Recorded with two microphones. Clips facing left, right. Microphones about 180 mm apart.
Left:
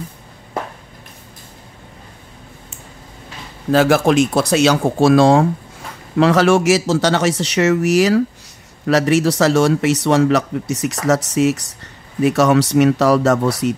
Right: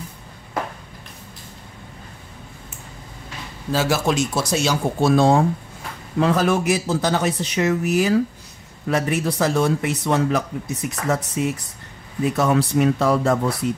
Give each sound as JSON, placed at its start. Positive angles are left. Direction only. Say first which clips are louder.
{"t": 3.7, "sound": "speech", "louder": "left 8 dB", "side_deg": 55}